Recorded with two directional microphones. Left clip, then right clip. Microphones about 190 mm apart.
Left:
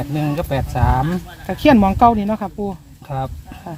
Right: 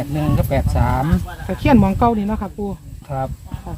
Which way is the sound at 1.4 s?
60° left (ahead or behind).